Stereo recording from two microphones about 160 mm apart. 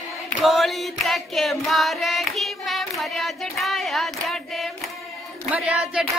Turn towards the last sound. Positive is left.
turn(degrees=-5)  # may be behind; listen again after turning